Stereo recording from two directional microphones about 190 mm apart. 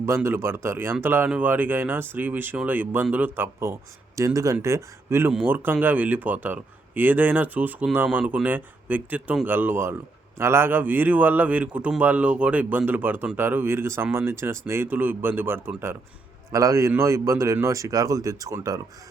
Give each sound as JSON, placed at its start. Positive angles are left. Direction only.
{"t": 0.0, "sound": "speech", "side_deg": -15}